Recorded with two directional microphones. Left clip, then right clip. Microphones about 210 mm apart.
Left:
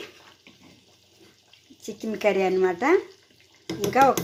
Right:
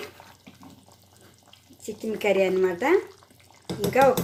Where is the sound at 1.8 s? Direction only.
5° left (ahead or behind).